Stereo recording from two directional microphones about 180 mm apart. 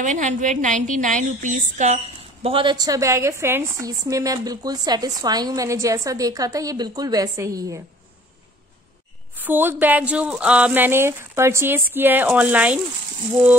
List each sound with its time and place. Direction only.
0.0 s a woman's voice: 40° right (ahead or behind)
2.4 s a woman's voice: 30° right (ahead or behind)
9.4 s speech: 10° right (ahead or behind)